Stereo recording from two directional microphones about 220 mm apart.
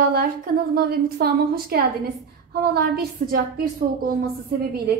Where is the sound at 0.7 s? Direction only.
45° right (ahead or behind).